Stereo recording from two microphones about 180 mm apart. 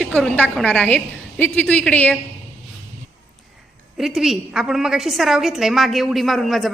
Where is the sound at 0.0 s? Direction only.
5° left (ahead or behind).